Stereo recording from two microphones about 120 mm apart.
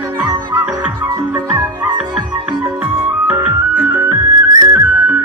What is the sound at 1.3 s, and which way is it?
Music, 15° right (ahead or behind).